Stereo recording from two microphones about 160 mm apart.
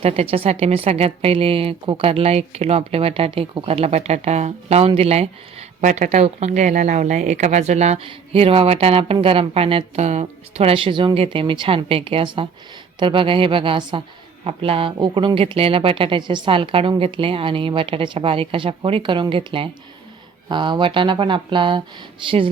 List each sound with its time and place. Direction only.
0.0 s speech: 40° right (ahead or behind)